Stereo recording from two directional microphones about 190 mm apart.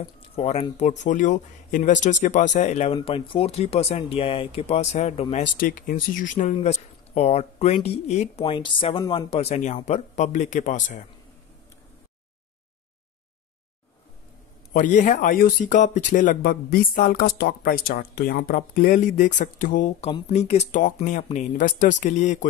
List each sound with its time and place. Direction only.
0.0 s speech: 30° left (ahead or behind)
14.7 s speech: 40° left (ahead or behind)